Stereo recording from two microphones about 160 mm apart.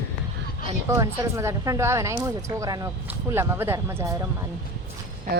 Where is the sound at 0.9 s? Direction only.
20° right (ahead or behind).